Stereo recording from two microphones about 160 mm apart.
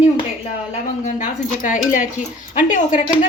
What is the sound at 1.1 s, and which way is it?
Speech, 55° left (ahead or behind).